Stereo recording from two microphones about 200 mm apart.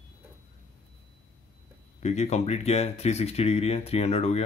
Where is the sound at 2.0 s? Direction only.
35° left (ahead or behind).